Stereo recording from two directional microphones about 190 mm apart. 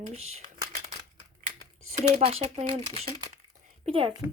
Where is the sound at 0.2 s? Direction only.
90° right.